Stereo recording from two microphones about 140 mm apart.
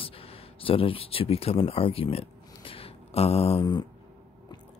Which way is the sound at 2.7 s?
45° left (ahead or behind).